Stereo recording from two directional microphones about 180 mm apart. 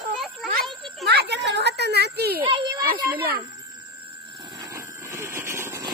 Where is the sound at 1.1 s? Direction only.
70° right (ahead or behind).